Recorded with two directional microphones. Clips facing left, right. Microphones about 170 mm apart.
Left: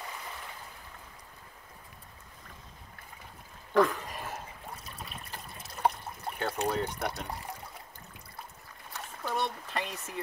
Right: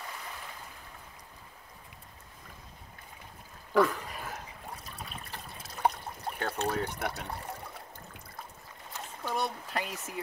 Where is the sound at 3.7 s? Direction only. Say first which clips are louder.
Even; centre (ahead or behind).